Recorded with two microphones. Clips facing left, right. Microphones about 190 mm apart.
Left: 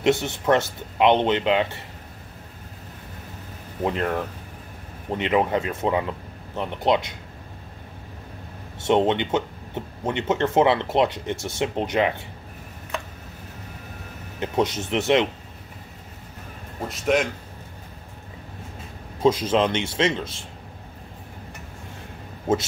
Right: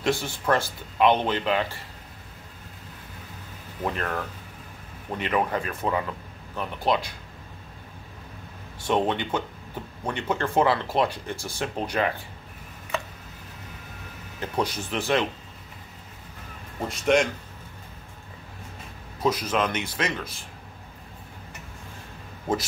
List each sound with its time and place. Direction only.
0.0 s speech: 20° left (ahead or behind)
3.8 s speech: 20° left (ahead or behind)
8.8 s speech: 25° left (ahead or behind)
14.4 s speech: 20° left (ahead or behind)
16.8 s speech: centre (ahead or behind)
19.2 s speech: 25° left (ahead or behind)